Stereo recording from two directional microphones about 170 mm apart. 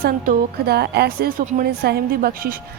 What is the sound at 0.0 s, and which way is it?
A woman's voice, 65° right (ahead or behind).